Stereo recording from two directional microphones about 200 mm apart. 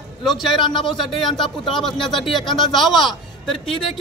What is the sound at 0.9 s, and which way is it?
A man's voice, centre (ahead or behind).